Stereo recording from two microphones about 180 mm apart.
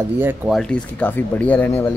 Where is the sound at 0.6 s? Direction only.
5° left (ahead or behind).